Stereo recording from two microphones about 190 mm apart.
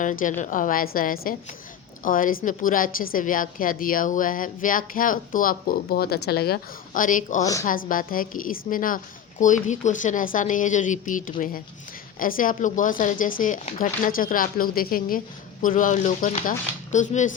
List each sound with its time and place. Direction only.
0.0 s a woman's voice: 45° left (ahead or behind)